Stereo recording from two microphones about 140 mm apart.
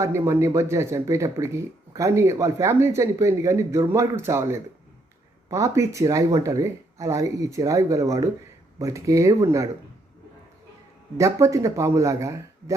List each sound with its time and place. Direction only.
0.0 s speech: 20° right (ahead or behind)
11.2 s speech: 20° right (ahead or behind)